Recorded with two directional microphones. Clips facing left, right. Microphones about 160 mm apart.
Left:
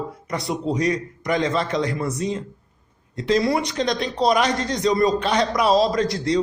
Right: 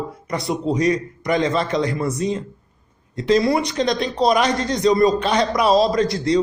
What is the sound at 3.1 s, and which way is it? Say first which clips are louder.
A man's voice: right 3 dB; 25° right (ahead or behind).